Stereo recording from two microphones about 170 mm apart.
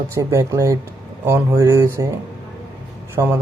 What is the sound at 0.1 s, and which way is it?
Speech, 15° right (ahead or behind).